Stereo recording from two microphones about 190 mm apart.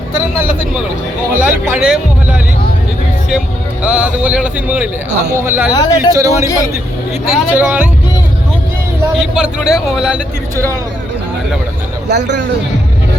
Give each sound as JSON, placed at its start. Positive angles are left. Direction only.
{"t": 1.3, "sound": "speech", "side_deg": -10}
{"t": 3.8, "sound": "speech", "side_deg": -5}
{"t": 5.7, "sound": "a man's voice", "side_deg": 20}
{"t": 6.1, "sound": "speech", "side_deg": -15}
{"t": 9.1, "sound": "a man's voice", "side_deg": -5}
{"t": 12.0, "sound": "speech", "side_deg": -65}